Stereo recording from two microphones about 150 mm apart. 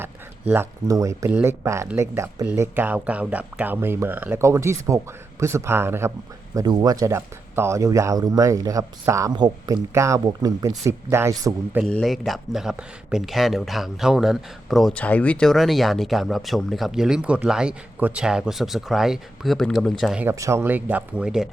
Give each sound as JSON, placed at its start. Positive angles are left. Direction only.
{"t": 0.0, "sound": "speech", "side_deg": -15}
{"t": 11.9, "sound": "speech", "side_deg": 5}
{"t": 20.2, "sound": "speech", "side_deg": -20}